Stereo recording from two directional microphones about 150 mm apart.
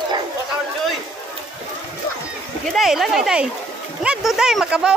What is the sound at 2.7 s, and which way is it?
Speech, centre (ahead or behind).